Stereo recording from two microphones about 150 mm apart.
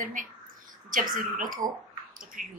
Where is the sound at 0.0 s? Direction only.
60° right (ahead or behind).